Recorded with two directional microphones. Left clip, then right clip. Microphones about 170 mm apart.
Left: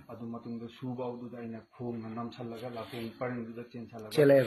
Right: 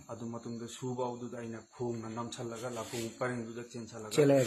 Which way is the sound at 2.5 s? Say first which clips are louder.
Right 1 dB; 30° right (ahead or behind).